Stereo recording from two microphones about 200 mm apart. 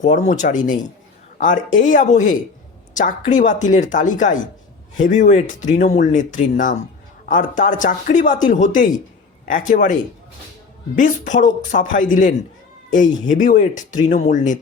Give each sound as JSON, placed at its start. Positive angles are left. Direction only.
{"t": 0.3, "sound": "speech", "side_deg": 35}